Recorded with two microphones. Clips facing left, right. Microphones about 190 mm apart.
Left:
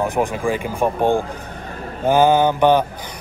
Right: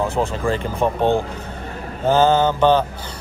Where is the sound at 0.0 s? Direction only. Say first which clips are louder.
Left 1 dB; 15° left (ahead or behind).